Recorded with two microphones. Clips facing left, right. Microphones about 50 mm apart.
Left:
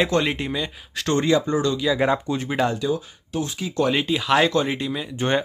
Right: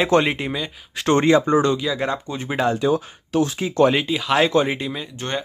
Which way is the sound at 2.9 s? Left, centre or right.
Right.